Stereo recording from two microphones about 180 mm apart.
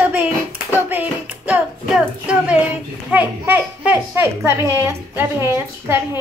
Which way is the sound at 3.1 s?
10° right (ahead or behind).